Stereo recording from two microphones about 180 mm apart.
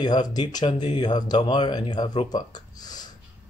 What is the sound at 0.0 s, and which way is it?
Speech, 20° left (ahead or behind).